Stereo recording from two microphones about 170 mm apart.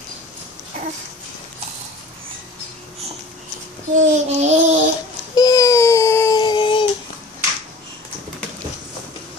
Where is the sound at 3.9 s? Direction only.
40° right (ahead or behind).